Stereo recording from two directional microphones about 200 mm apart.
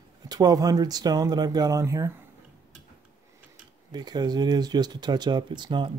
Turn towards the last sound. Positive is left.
turn(degrees=-25)  # may be behind; listen again after turning